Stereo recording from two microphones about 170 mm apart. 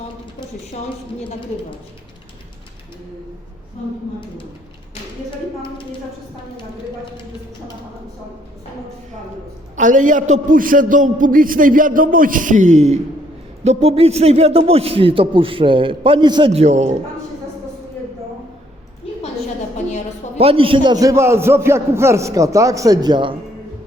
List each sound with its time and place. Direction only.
9.7 s a man's voice: 50° right (ahead or behind); by 16.5 s 30° right (ahead or behind)
16.5 s a man's voice: 40° right (ahead or behind)
20.4 s a man's voice: 35° right (ahead or behind)